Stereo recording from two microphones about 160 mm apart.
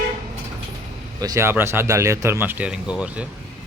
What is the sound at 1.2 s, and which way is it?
Speech, 20° right (ahead or behind).